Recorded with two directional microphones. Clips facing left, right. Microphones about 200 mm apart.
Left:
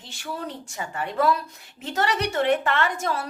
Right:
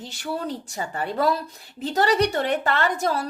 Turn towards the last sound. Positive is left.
turn(degrees=-35)  # may be behind; listen again after turning